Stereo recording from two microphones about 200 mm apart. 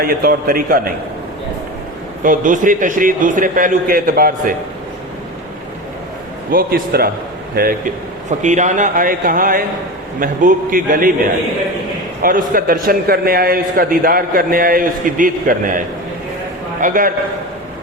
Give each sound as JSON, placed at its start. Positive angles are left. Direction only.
{"t": 0.0, "sound": "a man's voice", "side_deg": -45}
{"t": 2.2, "sound": "a man's voice", "side_deg": -40}
{"t": 6.5, "sound": "a man's voice", "side_deg": -45}
{"t": 12.2, "sound": "a man's voice", "side_deg": -45}
{"t": 16.8, "sound": "a man's voice", "side_deg": -45}